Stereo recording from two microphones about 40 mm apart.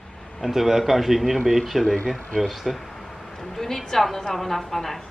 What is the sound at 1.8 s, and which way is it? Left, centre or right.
Speech, left.